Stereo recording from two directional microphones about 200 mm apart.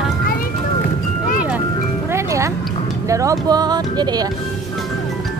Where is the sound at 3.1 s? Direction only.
15° right (ahead or behind).